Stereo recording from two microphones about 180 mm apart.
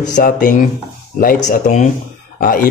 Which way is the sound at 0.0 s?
45° left (ahead or behind).